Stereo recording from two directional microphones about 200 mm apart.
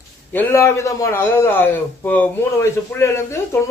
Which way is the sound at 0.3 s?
15° left (ahead or behind).